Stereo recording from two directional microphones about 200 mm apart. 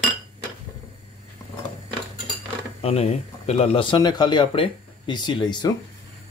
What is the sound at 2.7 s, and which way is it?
Speech, 30° left (ahead or behind).